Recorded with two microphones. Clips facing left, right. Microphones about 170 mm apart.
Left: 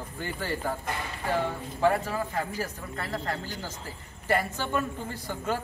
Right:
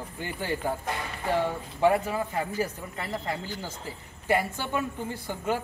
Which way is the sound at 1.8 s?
10° right (ahead or behind).